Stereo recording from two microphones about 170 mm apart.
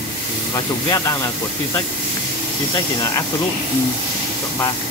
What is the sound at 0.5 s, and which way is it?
Speech, 20° left (ahead or behind).